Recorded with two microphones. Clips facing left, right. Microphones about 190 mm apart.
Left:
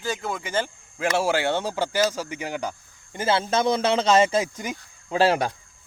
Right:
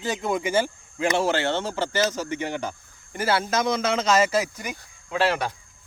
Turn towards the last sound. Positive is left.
turn(degrees=40)  # may be behind; listen again after turning